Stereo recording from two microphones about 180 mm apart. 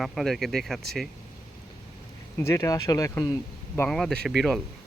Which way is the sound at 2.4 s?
15° left (ahead or behind).